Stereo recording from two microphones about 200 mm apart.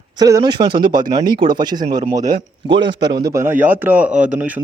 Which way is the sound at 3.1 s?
20° right (ahead or behind).